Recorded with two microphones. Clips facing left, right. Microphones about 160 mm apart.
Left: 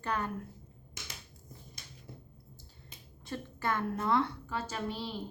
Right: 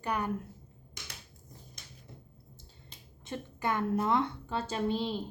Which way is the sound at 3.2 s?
15° right (ahead or behind).